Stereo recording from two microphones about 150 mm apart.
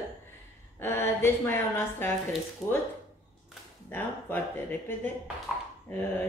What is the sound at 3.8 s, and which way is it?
Speech, 15° left (ahead or behind).